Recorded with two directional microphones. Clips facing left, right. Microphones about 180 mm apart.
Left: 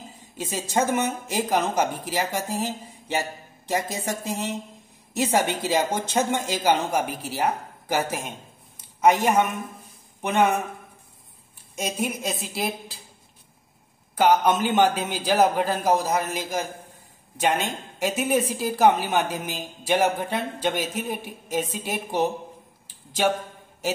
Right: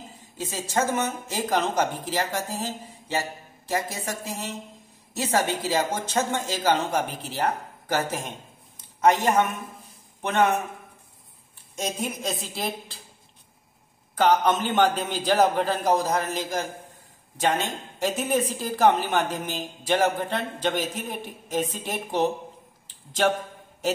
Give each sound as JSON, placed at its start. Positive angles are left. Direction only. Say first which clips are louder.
{"t": 0.4, "sound": "a woman's voice", "louder": "left 2 dB", "side_deg": 15}
{"t": 11.7, "sound": "a woman's voice", "louder": "left 2 dB", "side_deg": 10}
{"t": 14.1, "sound": "a woman's voice", "louder": "left 1 dB", "side_deg": 10}